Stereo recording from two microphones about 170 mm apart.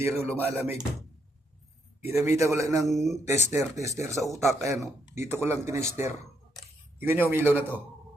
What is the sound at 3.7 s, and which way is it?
Speech, 20° right (ahead or behind).